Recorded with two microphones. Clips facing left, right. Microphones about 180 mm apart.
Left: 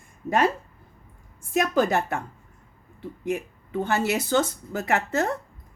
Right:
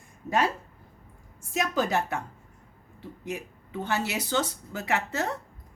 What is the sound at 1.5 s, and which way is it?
Speech, 55° left (ahead or behind).